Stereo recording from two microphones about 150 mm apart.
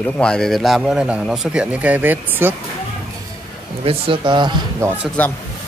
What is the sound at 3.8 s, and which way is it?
Speech, 35° right (ahead or behind).